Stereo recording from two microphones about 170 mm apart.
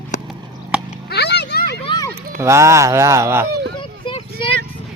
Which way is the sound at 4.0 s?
30° left (ahead or behind).